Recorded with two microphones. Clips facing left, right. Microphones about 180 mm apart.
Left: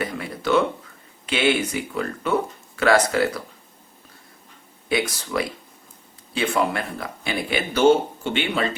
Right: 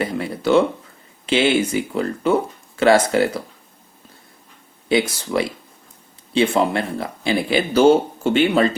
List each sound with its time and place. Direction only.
0.0 s a sound: 30° right (ahead or behind)
1.3 s speech: 30° right (ahead or behind)
4.9 s speech: 25° right (ahead or behind)